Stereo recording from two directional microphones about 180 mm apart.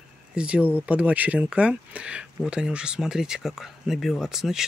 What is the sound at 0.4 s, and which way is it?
Speech, 5° right (ahead or behind).